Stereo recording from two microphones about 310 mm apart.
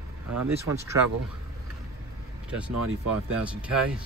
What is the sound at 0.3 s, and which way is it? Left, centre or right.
Speech, right.